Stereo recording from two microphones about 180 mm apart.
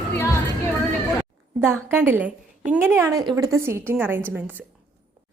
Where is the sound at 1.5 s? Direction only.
10° right (ahead or behind).